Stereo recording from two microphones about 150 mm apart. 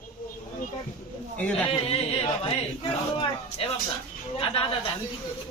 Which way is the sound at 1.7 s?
40° left (ahead or behind).